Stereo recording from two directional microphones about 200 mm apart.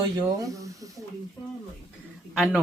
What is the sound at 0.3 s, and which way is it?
Speech, 15° right (ahead or behind).